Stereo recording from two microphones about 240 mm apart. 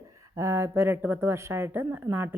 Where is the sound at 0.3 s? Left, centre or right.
Centre.